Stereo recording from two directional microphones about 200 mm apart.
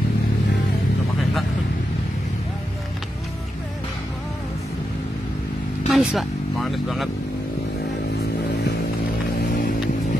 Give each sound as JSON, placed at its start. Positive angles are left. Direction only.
{"t": 5.9, "sound": "speech", "side_deg": 0}